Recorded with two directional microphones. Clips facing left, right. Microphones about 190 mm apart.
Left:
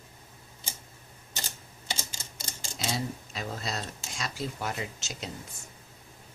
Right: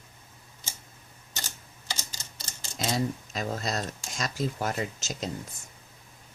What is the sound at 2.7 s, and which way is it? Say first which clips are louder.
Speech: right 4 dB; 45° right (ahead or behind).